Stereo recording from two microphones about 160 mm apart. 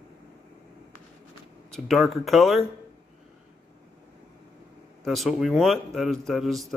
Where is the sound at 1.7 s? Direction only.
Centre (ahead or behind).